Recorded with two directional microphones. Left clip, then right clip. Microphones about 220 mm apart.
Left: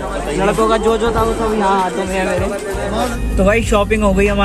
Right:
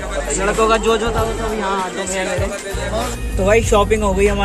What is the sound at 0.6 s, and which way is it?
Speech, 10° right (ahead or behind).